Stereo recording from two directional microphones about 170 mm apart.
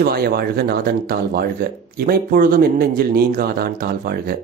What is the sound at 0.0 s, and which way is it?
Speech, 65° right (ahead or behind).